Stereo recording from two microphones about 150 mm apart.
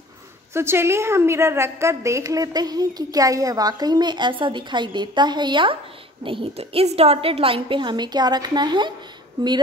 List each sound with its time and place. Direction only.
0.5 s a woman's voice: 15° right (ahead or behind)